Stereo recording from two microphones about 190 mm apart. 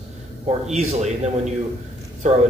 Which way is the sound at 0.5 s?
35° right (ahead or behind).